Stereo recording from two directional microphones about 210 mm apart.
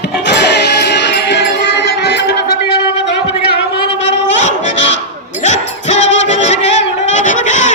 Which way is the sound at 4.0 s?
55° left (ahead or behind).